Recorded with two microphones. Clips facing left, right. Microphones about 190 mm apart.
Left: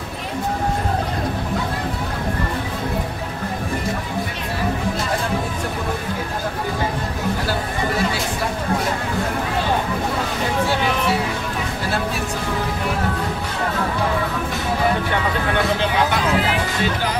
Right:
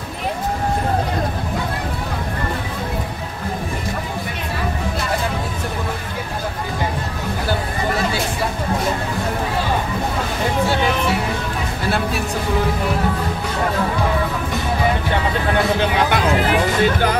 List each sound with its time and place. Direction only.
16.1 s music: 55° right (ahead or behind)